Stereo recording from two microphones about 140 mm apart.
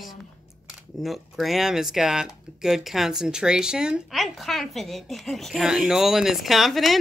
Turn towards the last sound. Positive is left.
turn(degrees=0)  # may be behind; listen again after turning